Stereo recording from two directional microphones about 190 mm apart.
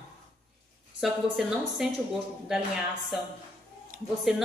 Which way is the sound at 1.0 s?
Centre (ahead or behind).